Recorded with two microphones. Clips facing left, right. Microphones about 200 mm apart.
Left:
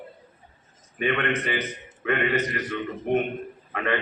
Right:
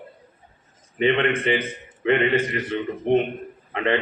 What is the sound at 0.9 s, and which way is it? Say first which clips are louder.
A man's voice: right 5 dB; 25° right (ahead or behind).